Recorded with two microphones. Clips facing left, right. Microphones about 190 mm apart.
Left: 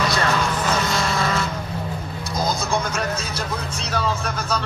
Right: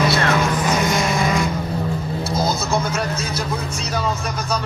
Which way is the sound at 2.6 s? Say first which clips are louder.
Right 2 dB; 5° right (ahead or behind).